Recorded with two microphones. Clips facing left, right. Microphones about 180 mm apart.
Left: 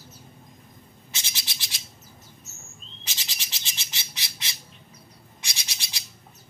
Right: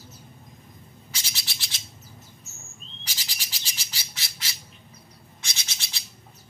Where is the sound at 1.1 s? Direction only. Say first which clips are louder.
Left 1 dB; 20° left (ahead or behind).